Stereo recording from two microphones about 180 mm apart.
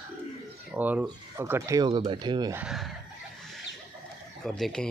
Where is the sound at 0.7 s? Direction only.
10° right (ahead or behind); by 2.5 s 25° right (ahead or behind).